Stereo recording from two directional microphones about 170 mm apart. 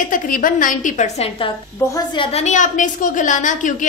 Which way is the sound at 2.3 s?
45° left (ahead or behind).